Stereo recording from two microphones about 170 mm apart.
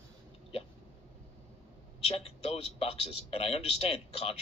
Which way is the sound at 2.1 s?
35° left (ahead or behind).